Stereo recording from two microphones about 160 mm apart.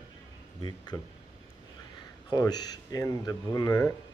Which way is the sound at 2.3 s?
25° left (ahead or behind).